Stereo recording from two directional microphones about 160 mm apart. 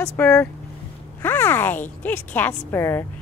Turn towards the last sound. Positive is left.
turn(degrees=15)  # may be behind; listen again after turning